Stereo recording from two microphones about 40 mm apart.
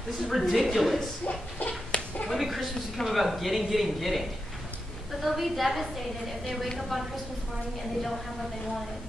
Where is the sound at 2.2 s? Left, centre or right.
Centre.